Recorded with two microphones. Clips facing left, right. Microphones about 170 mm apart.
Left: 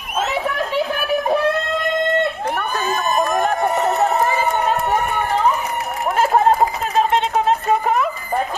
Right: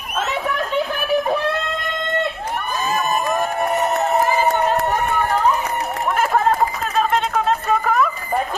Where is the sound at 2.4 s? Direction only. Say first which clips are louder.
Left 2 dB; 65° left (ahead or behind).